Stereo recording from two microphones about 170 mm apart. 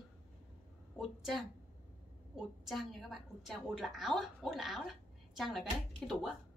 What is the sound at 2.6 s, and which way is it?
A woman's voice, centre (ahead or behind).